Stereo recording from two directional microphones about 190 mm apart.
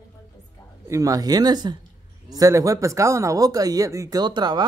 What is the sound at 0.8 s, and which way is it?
Speech, 15° right (ahead or behind).